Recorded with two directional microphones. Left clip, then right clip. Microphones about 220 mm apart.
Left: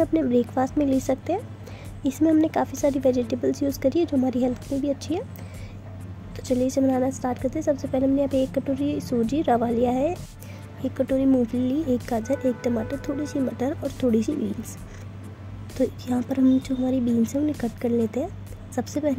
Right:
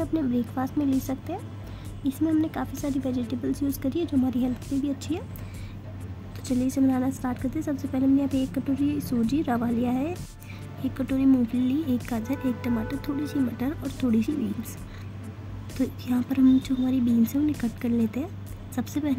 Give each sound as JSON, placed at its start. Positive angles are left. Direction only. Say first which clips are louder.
{"t": 0.0, "sound": "a woman's voice", "louder": "left 6 dB", "side_deg": 15}
{"t": 6.4, "sound": "a woman's voice", "louder": "left 3 dB", "side_deg": 15}
{"t": 15.8, "sound": "a woman's voice", "louder": "left 3 dB", "side_deg": 15}